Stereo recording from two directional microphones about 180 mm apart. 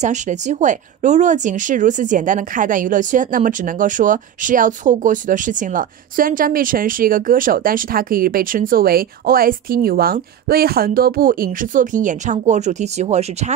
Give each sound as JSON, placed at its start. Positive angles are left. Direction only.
{"t": 0.0, "sound": "speech", "side_deg": -40}